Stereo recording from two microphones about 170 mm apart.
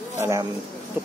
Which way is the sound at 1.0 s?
10° right (ahead or behind).